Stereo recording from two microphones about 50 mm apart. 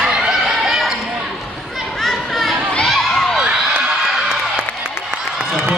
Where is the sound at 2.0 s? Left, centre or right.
Centre.